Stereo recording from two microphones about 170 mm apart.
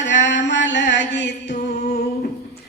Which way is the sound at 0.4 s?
90° left.